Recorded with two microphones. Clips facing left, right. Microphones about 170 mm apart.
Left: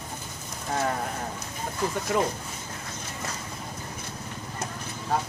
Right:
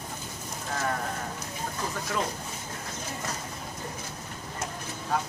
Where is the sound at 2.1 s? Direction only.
20° left (ahead or behind).